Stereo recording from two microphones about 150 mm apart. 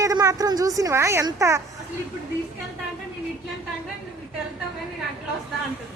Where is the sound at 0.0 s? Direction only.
20° right (ahead or behind).